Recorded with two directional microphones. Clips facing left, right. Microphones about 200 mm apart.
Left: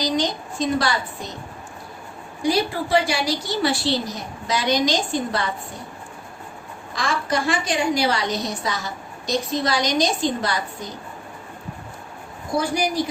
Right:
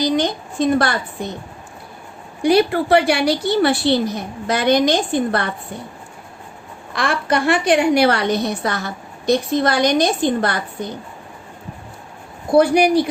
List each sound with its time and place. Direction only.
0.0 s a woman's voice: 55° right (ahead or behind)
2.4 s a woman's voice: 65° right (ahead or behind)
6.9 s a woman's voice: 65° right (ahead or behind)
12.5 s a woman's voice: 65° right (ahead or behind)